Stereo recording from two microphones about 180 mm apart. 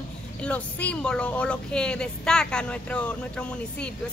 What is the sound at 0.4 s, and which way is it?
Speech, 5° left (ahead or behind).